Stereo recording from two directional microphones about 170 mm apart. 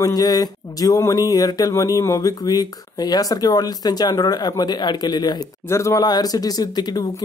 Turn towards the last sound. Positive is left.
turn(degrees=25)  # may be behind; listen again after turning